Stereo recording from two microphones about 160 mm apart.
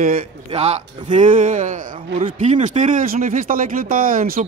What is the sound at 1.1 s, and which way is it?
Speech, 55° right (ahead or behind).